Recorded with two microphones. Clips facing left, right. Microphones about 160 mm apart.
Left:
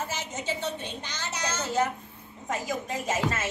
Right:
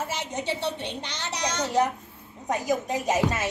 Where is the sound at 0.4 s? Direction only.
65° right (ahead or behind).